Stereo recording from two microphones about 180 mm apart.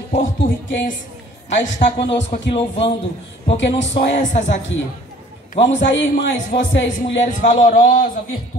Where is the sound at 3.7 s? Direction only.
40° left (ahead or behind).